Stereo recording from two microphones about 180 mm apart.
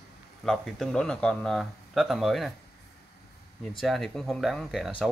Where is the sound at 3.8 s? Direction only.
Centre (ahead or behind).